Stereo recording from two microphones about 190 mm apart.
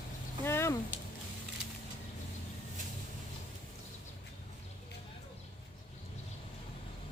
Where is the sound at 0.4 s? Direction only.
15° left (ahead or behind).